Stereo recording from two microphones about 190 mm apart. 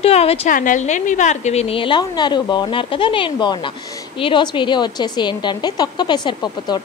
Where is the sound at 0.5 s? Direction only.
45° left (ahead or behind).